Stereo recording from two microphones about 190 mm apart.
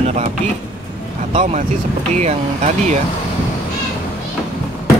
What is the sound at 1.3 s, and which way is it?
Speech, 40° right (ahead or behind).